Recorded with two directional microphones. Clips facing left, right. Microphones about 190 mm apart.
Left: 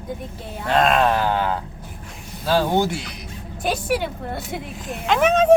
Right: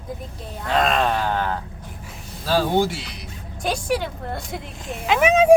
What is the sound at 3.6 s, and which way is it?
Speech, 5° left (ahead or behind).